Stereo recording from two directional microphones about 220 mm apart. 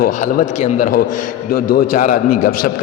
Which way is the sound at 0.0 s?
35° left (ahead or behind).